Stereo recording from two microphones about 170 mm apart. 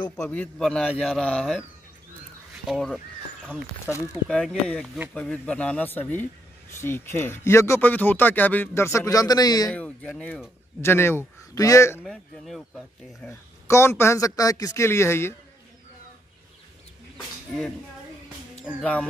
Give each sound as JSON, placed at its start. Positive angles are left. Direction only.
{"t": 0.2, "sound": "speech", "side_deg": 10}
{"t": 2.6, "sound": "speech", "side_deg": 0}
{"t": 4.3, "sound": "speech", "side_deg": 5}
{"t": 9.7, "sound": "speech", "side_deg": 10}
{"t": 12.0, "sound": "speech", "side_deg": 0}
{"t": 13.2, "sound": "speech", "side_deg": 15}
{"t": 18.8, "sound": "speech", "side_deg": 5}